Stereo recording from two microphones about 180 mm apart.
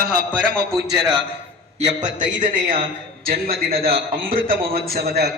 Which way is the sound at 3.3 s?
55° right (ahead or behind).